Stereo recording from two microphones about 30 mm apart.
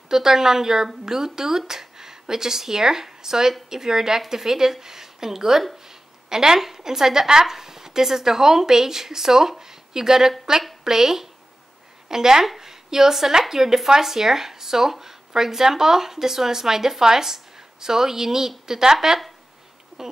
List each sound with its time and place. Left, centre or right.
0.1 s a woman's voice: centre